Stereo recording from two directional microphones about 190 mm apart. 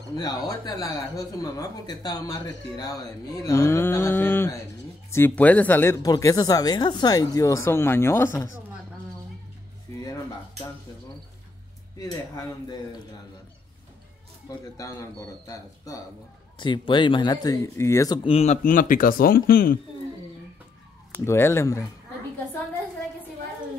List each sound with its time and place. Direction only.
0.2 s speech: 20° left (ahead or behind)
14.8 s speech: 15° left (ahead or behind); by 19.8 s 50° left (ahead or behind)
21.2 s speech: 15° left (ahead or behind)